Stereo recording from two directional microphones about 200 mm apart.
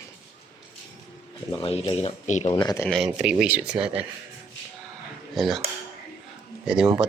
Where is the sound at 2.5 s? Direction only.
20° left (ahead or behind).